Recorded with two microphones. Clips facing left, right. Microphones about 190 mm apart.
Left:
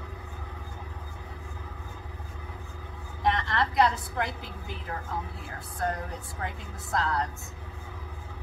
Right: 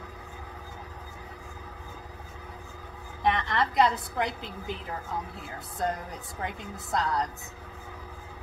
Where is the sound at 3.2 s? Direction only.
15° right (ahead or behind).